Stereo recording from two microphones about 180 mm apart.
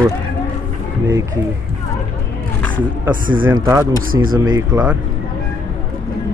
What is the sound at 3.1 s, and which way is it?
Speech, 50° right (ahead or behind).